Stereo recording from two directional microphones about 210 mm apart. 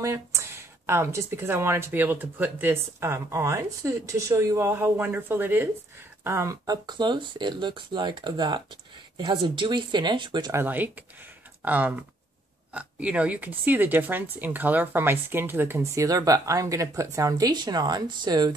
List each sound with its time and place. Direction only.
0.0 s speech: 15° right (ahead or behind)